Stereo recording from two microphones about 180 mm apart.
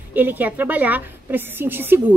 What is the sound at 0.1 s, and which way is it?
A woman's voice, 10° right (ahead or behind).